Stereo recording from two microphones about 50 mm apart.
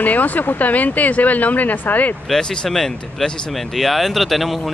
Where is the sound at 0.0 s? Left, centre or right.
Left.